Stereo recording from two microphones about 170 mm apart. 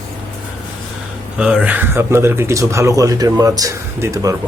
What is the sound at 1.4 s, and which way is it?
Speech, 5° right (ahead or behind).